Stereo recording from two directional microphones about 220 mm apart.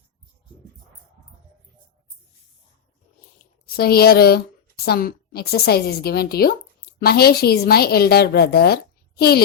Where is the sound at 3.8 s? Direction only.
45° left (ahead or behind).